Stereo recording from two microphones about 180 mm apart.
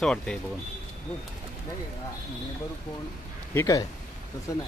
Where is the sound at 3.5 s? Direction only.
20° left (ahead or behind).